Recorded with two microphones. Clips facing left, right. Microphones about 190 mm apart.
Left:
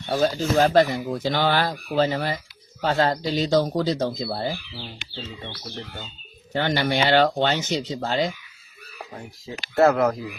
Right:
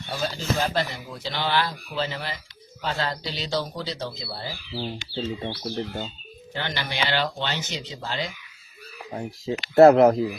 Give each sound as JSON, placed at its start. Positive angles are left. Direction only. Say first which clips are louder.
{"t": 0.1, "sound": "speech", "louder": "left 7 dB", "side_deg": 45}
{"t": 5.4, "sound": "speech", "louder": "right 7 dB", "side_deg": -35}
{"t": 6.5, "sound": "speech", "louder": "left 9 dB", "side_deg": 45}
{"t": 9.7, "sound": "speech", "louder": "right 5 dB", "side_deg": -25}